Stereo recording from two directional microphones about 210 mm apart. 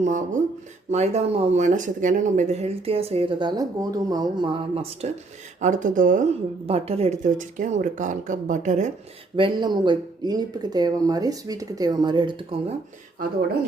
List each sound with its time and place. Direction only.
0.0 s a woman's voice: 35° right (ahead or behind)
9.3 s speech: 25° right (ahead or behind)